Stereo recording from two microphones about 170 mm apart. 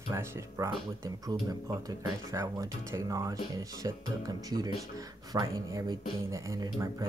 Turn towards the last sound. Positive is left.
turn(degrees=-20)  # may be behind; listen again after turning